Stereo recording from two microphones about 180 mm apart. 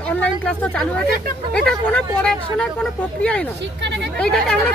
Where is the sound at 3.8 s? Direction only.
75° right (ahead or behind).